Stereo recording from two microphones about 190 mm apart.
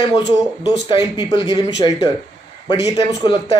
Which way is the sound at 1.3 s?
25° left (ahead or behind).